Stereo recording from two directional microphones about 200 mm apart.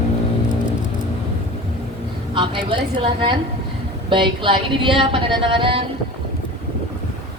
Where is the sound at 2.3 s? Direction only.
25° right (ahead or behind).